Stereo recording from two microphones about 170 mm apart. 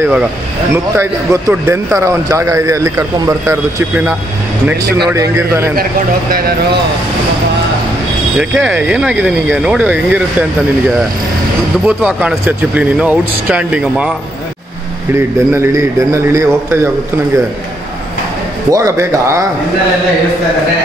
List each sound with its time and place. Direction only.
0.0 s speech: 10° right (ahead or behind)
8.4 s speech: 10° right (ahead or behind)
11.8 s speech: 5° right (ahead or behind)
15.1 s speech: 15° right (ahead or behind)
18.7 s speech: 20° right (ahead or behind)